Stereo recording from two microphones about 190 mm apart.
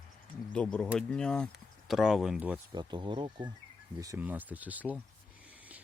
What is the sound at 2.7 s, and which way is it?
Speech, 25° right (ahead or behind).